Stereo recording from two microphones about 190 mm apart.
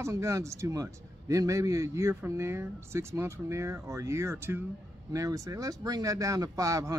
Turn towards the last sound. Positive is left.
turn(degrees=-15)  # may be behind; listen again after turning